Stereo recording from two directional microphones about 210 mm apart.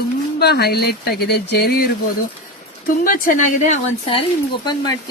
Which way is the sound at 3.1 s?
40° left (ahead or behind).